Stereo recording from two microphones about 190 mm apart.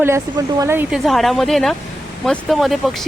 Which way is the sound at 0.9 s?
Centre (ahead or behind).